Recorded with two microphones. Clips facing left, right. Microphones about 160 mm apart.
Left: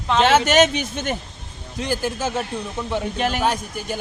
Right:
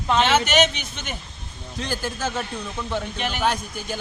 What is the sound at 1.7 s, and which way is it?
Speech, 15° left (ahead or behind).